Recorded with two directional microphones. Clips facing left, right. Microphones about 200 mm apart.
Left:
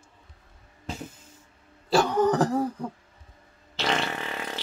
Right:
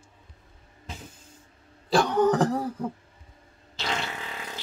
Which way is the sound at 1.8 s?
Centre (ahead or behind).